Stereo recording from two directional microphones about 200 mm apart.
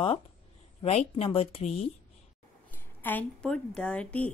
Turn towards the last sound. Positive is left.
turn(degrees=5)  # may be behind; listen again after turning